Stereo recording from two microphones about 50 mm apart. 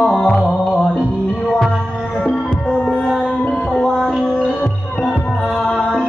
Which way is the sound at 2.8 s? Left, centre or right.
Centre.